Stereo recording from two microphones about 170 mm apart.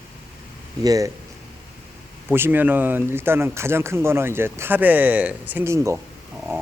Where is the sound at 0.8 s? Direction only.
20° right (ahead or behind).